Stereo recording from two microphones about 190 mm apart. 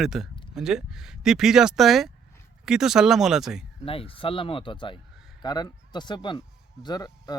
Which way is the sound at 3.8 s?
30° left (ahead or behind).